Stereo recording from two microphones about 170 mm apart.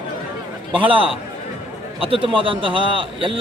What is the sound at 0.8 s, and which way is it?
A man's voice, 30° right (ahead or behind).